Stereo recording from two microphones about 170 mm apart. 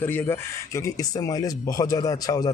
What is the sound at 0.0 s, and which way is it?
Speech, 10° left (ahead or behind).